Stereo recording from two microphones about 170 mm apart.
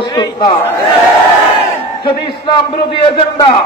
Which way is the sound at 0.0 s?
25° left (ahead or behind).